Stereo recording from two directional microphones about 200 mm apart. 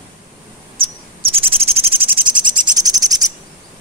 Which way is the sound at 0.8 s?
30° right (ahead or behind).